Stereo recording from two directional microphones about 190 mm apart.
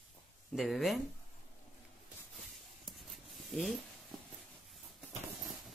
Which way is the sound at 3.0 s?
Centre (ahead or behind).